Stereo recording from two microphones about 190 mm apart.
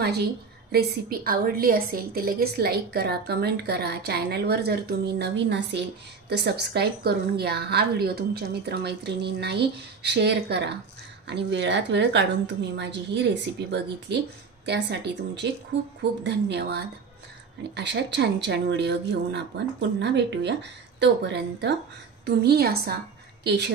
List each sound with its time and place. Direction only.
0.0 s a woman's voice: 55° right (ahead or behind)